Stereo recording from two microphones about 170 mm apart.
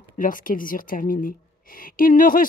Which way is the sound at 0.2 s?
55° left (ahead or behind).